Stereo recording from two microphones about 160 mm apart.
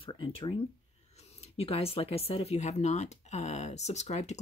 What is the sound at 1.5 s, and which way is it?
Speech, 40° left (ahead or behind).